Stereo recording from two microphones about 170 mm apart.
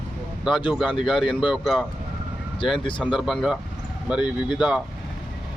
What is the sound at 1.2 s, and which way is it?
Speech, centre (ahead or behind).